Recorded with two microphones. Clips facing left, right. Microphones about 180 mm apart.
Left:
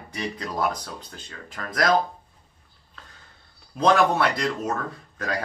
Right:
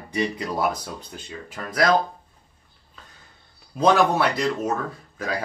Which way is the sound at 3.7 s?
5° right (ahead or behind).